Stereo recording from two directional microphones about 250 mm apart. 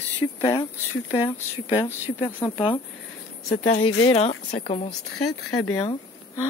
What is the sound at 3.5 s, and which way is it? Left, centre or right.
Speech, left.